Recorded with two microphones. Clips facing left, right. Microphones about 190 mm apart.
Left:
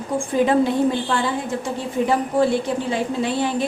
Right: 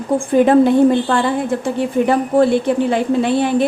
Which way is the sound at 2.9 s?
60° right (ahead or behind).